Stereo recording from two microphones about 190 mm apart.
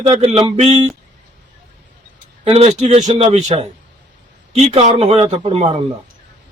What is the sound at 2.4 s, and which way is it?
Speech, 35° right (ahead or behind).